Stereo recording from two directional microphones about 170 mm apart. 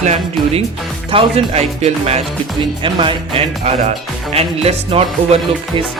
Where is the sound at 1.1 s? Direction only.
35° right (ahead or behind).